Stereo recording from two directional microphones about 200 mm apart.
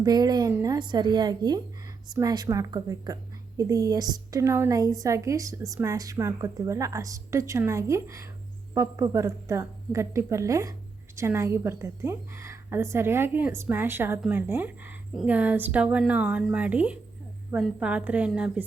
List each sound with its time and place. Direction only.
0.0 s a woman's voice: 20° right (ahead or behind)